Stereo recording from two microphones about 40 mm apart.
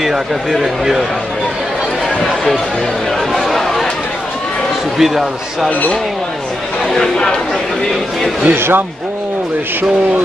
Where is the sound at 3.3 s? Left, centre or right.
Centre.